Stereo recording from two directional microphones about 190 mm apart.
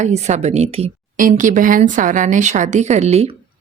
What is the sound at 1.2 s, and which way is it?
A woman's voice, 45° right (ahead or behind).